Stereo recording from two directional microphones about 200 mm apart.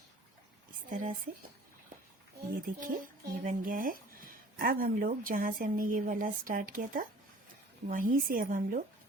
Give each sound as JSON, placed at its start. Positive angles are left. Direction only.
{"t": 0.9, "sound": "speech", "side_deg": -45}
{"t": 2.6, "sound": "speech", "side_deg": -45}